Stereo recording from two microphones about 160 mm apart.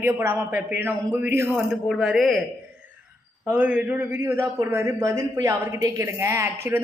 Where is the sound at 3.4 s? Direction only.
10° right (ahead or behind).